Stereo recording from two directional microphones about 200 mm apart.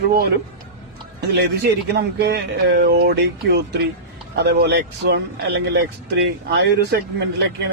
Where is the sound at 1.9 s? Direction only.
55° right (ahead or behind).